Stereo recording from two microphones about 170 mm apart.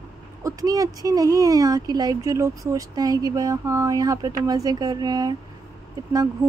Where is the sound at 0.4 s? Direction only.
20° right (ahead or behind).